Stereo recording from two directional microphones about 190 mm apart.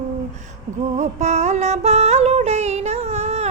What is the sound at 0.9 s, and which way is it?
Music, 35° right (ahead or behind).